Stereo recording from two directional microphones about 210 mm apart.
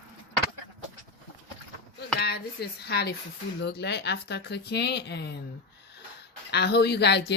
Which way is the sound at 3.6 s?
55° left (ahead or behind).